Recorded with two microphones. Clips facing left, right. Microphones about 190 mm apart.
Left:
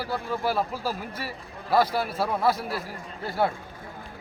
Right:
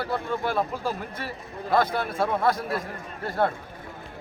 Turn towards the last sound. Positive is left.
turn(degrees=5)  # may be behind; listen again after turning